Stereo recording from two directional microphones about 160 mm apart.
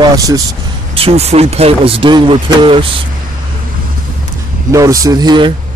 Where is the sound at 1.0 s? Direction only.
40° right (ahead or behind).